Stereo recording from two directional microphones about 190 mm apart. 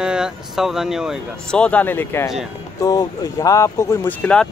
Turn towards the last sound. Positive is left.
turn(degrees=5)  # may be behind; listen again after turning